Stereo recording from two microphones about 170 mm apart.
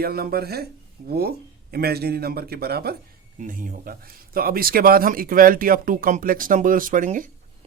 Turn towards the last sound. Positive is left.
turn(degrees=-50)  # may be behind; listen again after turning